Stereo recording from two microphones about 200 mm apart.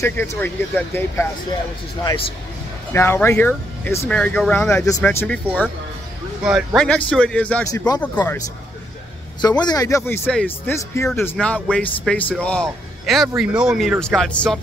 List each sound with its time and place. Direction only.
0.0 s speech: 10° left (ahead or behind)
2.9 s speech: 10° left (ahead or behind)
6.4 s a man's voice: centre (ahead or behind)
7.7 s speech: 20° left (ahead or behind)
9.4 s a man's voice: 20° left (ahead or behind); by 14.6 s 5° left (ahead or behind)